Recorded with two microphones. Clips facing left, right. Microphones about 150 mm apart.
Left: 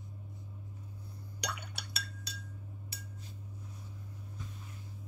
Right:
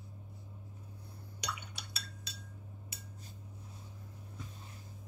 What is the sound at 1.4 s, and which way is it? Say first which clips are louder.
Chink: left 2 dB; 60° left (ahead or behind).